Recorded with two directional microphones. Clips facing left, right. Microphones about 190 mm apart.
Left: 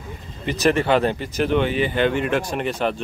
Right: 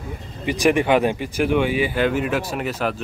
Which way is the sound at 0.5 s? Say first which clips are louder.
Right 1 dB; 10° right (ahead or behind).